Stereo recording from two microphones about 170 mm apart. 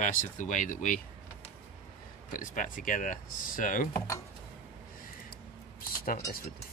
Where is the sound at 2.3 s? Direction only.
50° left (ahead or behind).